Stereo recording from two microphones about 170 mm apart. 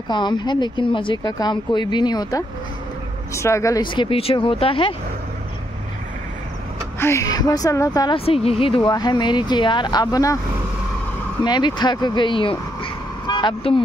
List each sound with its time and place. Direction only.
0.1 s speech: 25° left (ahead or behind)
7.0 s speech: 15° left (ahead or behind)
8.3 s speech: 35° left (ahead or behind)
11.4 s speech: 25° left (ahead or behind)